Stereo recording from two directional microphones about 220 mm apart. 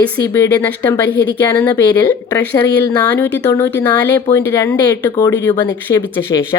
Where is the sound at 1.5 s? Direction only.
10° left (ahead or behind).